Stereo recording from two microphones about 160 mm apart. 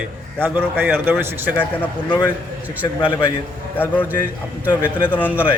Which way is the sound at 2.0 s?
25° left (ahead or behind).